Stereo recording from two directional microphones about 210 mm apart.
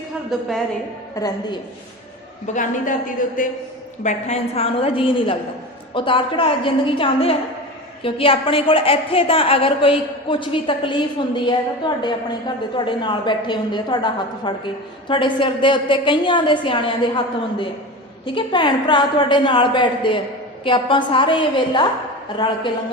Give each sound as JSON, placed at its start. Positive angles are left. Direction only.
{"t": 0.3, "sound": "a woman's voice", "side_deg": 0}
{"t": 1.1, "sound": "a woman's voice", "side_deg": 15}
{"t": 2.5, "sound": "a woman's voice", "side_deg": 35}
{"t": 18.3, "sound": "a woman's voice", "side_deg": 25}